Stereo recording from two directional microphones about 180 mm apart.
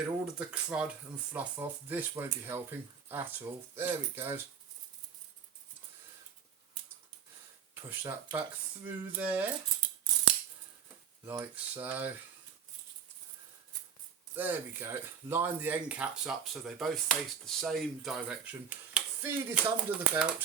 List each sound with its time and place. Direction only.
0.0 s speech: 5° right (ahead or behind)
7.8 s speech: 15° right (ahead or behind)
11.3 s speech: 10° right (ahead or behind)
14.3 s speech: 10° right (ahead or behind)